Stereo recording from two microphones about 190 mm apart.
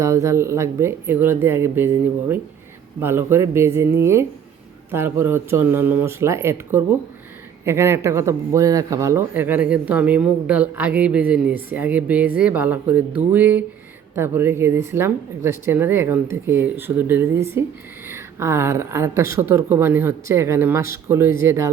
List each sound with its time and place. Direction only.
0.0 s speech: 15° right (ahead or behind)